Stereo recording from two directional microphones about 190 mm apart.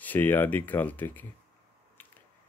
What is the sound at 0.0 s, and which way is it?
Speech, 10° left (ahead or behind).